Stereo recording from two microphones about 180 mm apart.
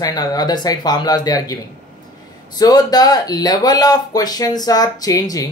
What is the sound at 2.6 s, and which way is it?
Speech, 20° left (ahead or behind).